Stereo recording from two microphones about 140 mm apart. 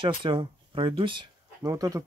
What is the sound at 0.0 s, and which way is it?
Speech, 35° right (ahead or behind).